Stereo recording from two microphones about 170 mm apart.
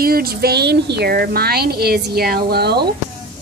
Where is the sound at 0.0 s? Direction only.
60° right (ahead or behind).